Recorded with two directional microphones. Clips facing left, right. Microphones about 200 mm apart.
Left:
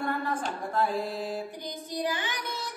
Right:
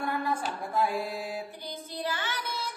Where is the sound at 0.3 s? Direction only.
10° right (ahead or behind).